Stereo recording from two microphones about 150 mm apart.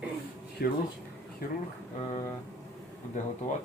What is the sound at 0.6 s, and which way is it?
Speech, 90° left.